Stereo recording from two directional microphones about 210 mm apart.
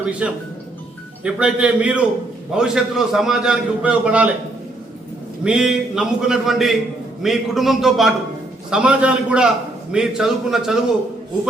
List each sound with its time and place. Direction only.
0.0 s a man's voice: 5° right (ahead or behind)
5.4 s a man's voice: 5° right (ahead or behind)